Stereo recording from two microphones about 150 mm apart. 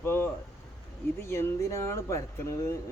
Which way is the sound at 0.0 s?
15° left (ahead or behind).